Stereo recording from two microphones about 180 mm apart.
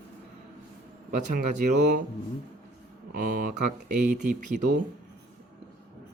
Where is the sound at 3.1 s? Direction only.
55° right (ahead or behind).